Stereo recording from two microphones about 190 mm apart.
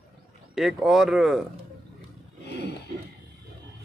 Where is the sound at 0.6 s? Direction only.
Centre (ahead or behind).